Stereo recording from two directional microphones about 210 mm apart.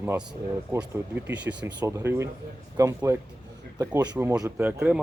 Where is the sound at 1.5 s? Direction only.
10° right (ahead or behind).